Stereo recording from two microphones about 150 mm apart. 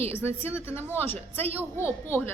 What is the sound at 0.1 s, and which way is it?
A woman's voice, 15° left (ahead or behind).